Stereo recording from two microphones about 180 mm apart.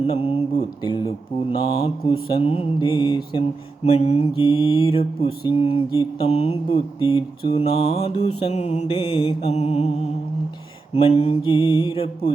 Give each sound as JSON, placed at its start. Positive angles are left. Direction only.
{"t": 0.0, "sound": "mantra", "side_deg": 30}
{"t": 3.8, "sound": "mantra", "side_deg": 35}
{"t": 10.9, "sound": "mantra", "side_deg": 35}